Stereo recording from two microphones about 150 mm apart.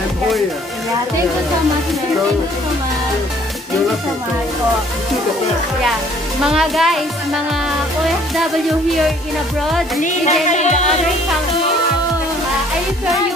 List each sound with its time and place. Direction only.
6.4 s speech: 5° right (ahead or behind)
10.0 s music: 50° left (ahead or behind)